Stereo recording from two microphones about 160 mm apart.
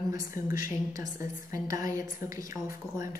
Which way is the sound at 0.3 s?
65° left (ahead or behind).